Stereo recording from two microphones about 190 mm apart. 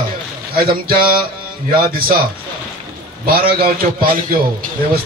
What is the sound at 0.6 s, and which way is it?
Speech, 50° right (ahead or behind).